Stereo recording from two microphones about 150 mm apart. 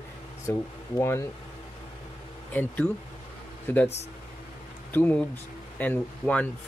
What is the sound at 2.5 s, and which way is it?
Speech, 10° left (ahead or behind).